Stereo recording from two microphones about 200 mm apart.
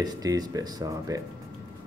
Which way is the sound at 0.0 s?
20° right (ahead or behind).